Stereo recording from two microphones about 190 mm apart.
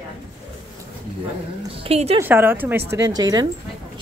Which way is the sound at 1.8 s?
30° right (ahead or behind).